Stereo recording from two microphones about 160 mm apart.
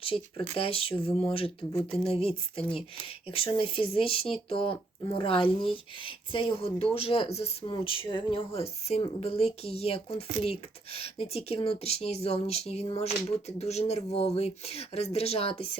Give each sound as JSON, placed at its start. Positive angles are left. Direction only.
{"t": 0.0, "sound": "speech", "side_deg": 35}